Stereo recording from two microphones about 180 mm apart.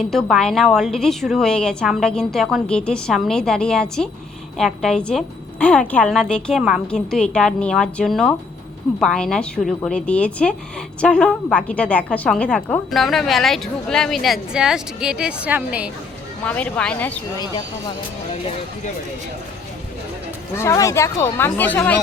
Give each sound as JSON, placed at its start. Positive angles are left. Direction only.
{"t": 0.0, "sound": "a woman's voice", "side_deg": 0}
{"t": 16.4, "sound": "speech", "side_deg": 10}
{"t": 17.4, "sound": "speech", "side_deg": 25}
{"t": 20.6, "sound": "speech", "side_deg": 15}